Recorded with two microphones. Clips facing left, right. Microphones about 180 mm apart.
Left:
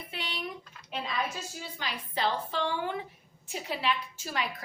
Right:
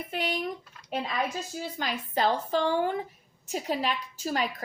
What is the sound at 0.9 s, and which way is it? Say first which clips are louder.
A woman's voice: right 4 dB; 40° right (ahead or behind).